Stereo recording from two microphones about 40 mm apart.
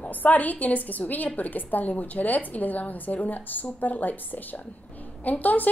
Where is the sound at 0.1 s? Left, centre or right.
Left.